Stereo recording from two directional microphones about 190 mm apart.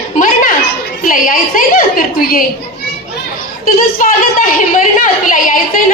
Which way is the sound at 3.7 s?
45° left (ahead or behind).